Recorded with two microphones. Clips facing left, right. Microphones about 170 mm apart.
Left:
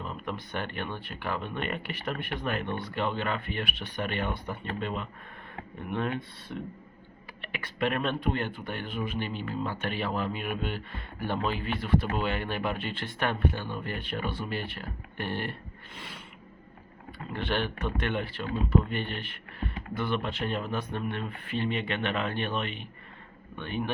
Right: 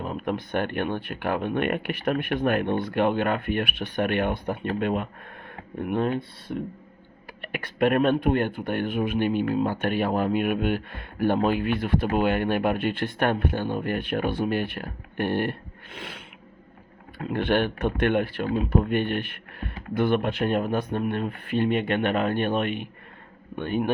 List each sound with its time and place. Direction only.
0.0 s speech: 50° right (ahead or behind)
6.0 s speech: 35° right (ahead or behind)
7.4 s speech: 50° right (ahead or behind)
16.0 s mechanisms: 80° right
17.2 s speech: 55° right (ahead or behind)